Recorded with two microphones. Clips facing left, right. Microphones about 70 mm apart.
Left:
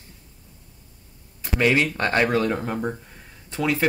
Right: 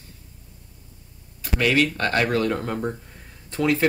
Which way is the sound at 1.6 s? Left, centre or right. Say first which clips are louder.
Even; left.